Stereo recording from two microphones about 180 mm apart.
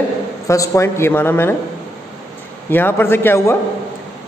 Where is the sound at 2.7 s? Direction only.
10° left (ahead or behind).